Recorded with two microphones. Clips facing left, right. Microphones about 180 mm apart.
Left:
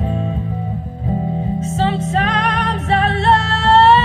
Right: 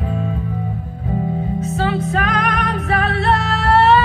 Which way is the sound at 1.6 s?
25° left (ahead or behind).